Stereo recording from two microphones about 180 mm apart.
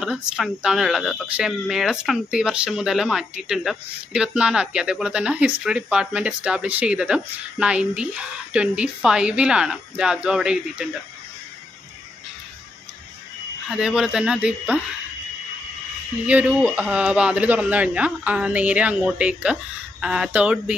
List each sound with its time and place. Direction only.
0.0 s speech: 5° right (ahead or behind)
13.7 s speech: 5° right (ahead or behind)
16.3 s speech: 5° right (ahead or behind)